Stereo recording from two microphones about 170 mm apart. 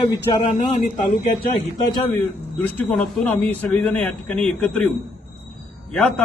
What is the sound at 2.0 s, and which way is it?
A man's voice, 10° left (ahead or behind).